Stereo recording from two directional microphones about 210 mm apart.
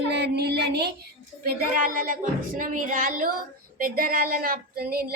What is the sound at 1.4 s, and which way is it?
Speech, 40° right (ahead or behind).